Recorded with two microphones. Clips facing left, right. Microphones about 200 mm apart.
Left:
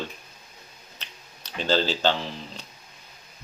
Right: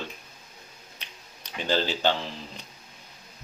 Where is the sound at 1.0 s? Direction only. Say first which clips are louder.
Left 2 dB; 15° right (ahead or behind).